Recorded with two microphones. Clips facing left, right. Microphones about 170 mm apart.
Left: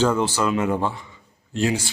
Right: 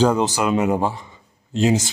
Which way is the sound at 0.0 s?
15° right (ahead or behind).